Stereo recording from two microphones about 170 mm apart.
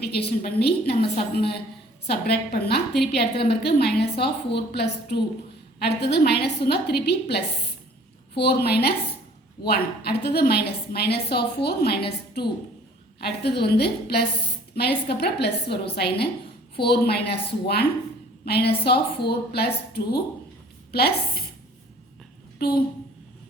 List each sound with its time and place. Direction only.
0.0 s a woman's voice: 70° left (ahead or behind)
22.5 s a woman's voice: 70° left (ahead or behind)